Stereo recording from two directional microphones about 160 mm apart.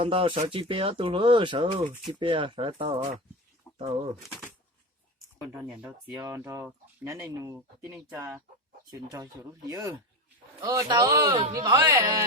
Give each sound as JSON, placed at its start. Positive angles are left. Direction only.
{"t": 0.0, "sound": "speech", "side_deg": -35}
{"t": 5.4, "sound": "speech", "side_deg": -10}
{"t": 6.1, "sound": "speech", "side_deg": -20}